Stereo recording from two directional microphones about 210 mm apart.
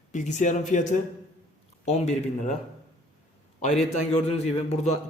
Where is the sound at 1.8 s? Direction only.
30° left (ahead or behind).